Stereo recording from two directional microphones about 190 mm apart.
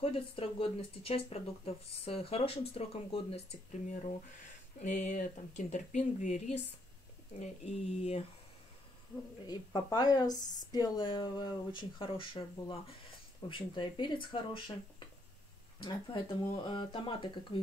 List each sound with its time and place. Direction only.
0.0 s speech: 30° left (ahead or behind)
4.7 s speech: 45° left (ahead or behind)
9.5 s speech: 20° left (ahead or behind)